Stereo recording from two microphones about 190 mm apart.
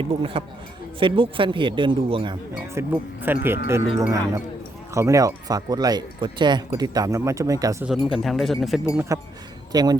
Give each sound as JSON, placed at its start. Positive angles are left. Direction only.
{"t": 0.0, "sound": "speech", "side_deg": -30}
{"t": 2.7, "sound": "speech", "side_deg": -10}
{"t": 7.9, "sound": "speech", "side_deg": 0}
{"t": 9.0, "sound": "speech", "side_deg": -15}